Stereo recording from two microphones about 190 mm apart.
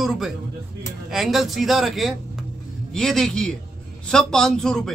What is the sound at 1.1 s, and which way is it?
A man's voice, centre (ahead or behind).